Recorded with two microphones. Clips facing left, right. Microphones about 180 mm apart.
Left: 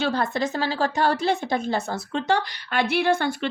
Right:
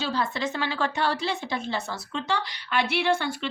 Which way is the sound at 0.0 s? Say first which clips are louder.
Left 4 dB; 50° left (ahead or behind).